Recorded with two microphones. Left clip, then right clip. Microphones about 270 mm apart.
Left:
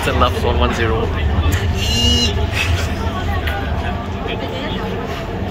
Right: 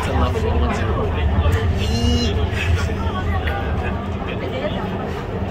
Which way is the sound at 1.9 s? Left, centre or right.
Centre.